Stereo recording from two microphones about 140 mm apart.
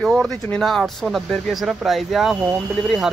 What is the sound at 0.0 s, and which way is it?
Speech, centre (ahead or behind).